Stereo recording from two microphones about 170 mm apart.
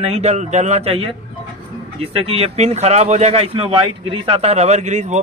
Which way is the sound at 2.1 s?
35° right (ahead or behind).